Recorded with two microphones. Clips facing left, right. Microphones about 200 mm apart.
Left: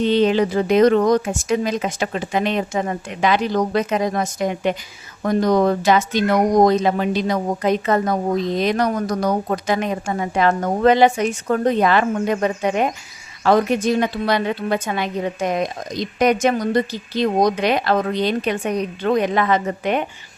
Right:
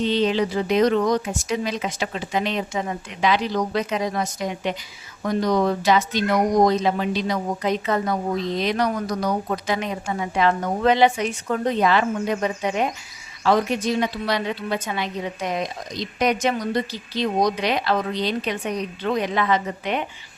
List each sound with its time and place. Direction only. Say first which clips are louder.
0.0 s speech: left 4 dB; 55° left (ahead or behind)